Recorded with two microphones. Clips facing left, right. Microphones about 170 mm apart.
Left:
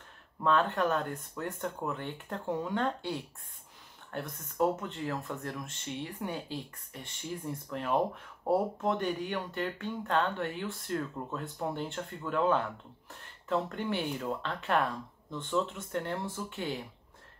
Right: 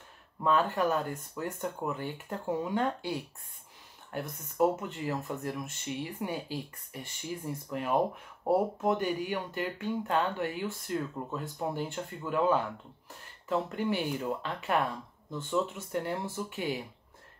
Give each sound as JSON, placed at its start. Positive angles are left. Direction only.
{"t": 0.4, "sound": "speech", "side_deg": -5}